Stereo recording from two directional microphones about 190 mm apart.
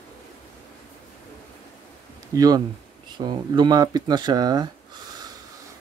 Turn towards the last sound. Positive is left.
turn(degrees=-20)  # may be behind; listen again after turning